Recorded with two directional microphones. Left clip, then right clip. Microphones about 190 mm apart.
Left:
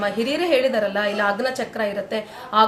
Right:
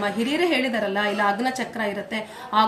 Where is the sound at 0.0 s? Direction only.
15° left (ahead or behind).